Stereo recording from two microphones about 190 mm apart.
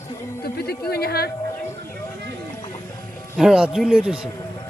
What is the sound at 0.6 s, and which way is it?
Speech, 55° left (ahead or behind).